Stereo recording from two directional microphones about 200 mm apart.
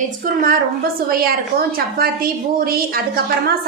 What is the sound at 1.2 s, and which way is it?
A woman's voice, 50° right (ahead or behind).